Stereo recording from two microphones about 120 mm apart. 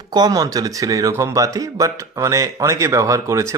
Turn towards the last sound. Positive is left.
turn(degrees=-25)  # may be behind; listen again after turning